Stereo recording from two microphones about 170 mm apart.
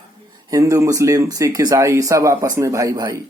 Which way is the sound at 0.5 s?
20° right (ahead or behind).